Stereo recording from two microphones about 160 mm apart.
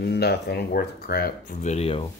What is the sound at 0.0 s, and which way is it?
Speech, 90° left.